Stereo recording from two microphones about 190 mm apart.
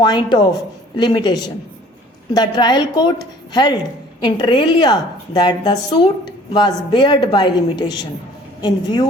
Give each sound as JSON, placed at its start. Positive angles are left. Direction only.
{"t": 0.0, "sound": "a woman's voice", "side_deg": 20}